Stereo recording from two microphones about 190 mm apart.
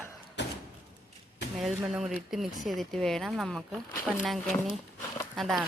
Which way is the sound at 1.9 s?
Centre (ahead or behind).